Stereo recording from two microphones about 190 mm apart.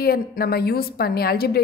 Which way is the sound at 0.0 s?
55° left (ahead or behind).